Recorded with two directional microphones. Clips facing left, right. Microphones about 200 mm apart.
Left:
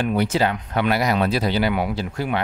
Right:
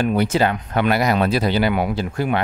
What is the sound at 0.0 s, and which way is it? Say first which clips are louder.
Speech: right 2 dB; 50° right (ahead or behind).